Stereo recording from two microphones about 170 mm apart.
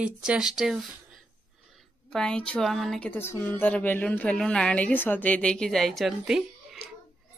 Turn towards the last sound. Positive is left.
turn(degrees=0)  # may be behind; listen again after turning